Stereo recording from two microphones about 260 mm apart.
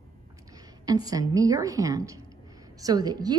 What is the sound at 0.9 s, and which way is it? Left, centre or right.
A woman's voice, centre.